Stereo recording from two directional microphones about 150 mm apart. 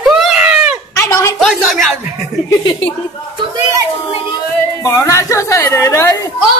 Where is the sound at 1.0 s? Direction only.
20° left (ahead or behind).